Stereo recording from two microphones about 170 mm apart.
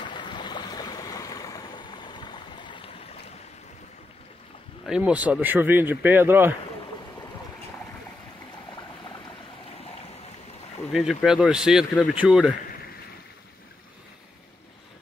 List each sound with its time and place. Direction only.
0.1 s stream: 25° left (ahead or behind)
4.8 s speech: 5° right (ahead or behind)
10.9 s speech: centre (ahead or behind)